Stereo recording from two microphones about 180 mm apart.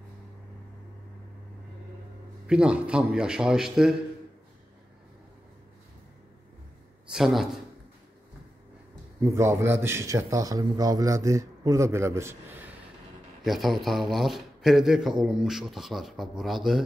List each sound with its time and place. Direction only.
2.4 s a man's voice: 5° right (ahead or behind)
7.1 s speech: centre (ahead or behind)
9.2 s a man's voice: 15° right (ahead or behind)
13.4 s a man's voice: centre (ahead or behind)